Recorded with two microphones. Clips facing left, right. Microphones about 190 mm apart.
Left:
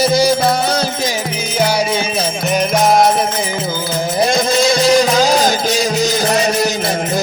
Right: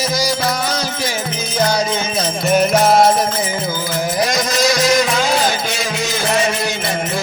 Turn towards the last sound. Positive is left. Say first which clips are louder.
# left 3 dB
turn(degrees=40)  # may be behind; listen again after turning